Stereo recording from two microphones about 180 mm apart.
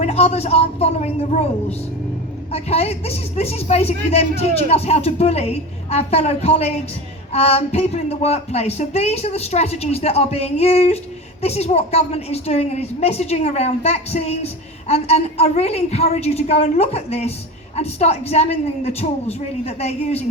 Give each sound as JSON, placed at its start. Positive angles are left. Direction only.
{"t": 0.0, "sound": "a woman's voice", "side_deg": 35}
{"t": 2.5, "sound": "a woman's voice", "side_deg": 35}